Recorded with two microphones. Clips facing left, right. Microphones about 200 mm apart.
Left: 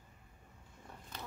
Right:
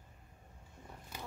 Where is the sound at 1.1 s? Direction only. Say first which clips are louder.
Right 1 dB; 10° right (ahead or behind).